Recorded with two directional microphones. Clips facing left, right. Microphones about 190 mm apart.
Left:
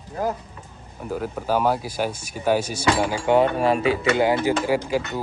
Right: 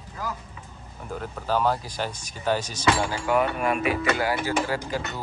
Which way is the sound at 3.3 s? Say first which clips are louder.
Left 6 dB; 30° left (ahead or behind).